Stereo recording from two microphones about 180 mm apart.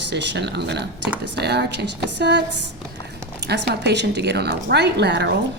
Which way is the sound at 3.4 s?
70° right (ahead or behind).